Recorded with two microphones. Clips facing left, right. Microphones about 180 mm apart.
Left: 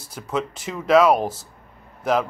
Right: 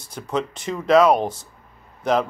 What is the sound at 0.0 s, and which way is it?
Speech, 5° left (ahead or behind).